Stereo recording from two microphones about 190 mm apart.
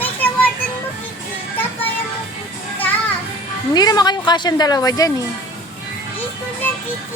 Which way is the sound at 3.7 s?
20° left (ahead or behind).